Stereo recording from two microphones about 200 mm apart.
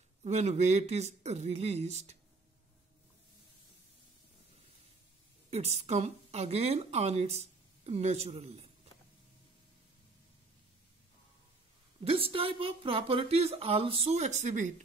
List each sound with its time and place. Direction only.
0.2 s a woman's voice: 35° right (ahead or behind)
5.5 s a woman's voice: 30° right (ahead or behind)
12.0 s a woman's voice: 30° right (ahead or behind)